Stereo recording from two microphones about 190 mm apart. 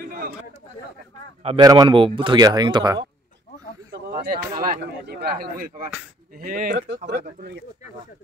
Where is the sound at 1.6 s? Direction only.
20° right (ahead or behind).